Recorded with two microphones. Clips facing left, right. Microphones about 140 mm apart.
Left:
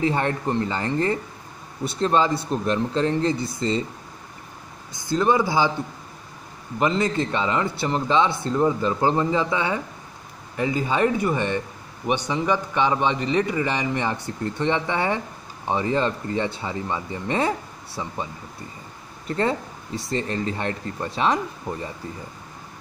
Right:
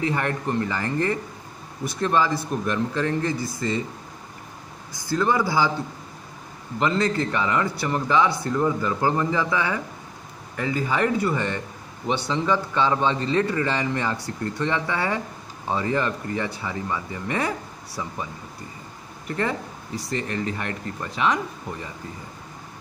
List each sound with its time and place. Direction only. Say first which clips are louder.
0.0 s speech: left 2 dB; 25° left (ahead or behind)
4.9 s speech: left 2 dB; 20° left (ahead or behind)
6.8 s a man's voice: left 1 dB; 20° left (ahead or behind)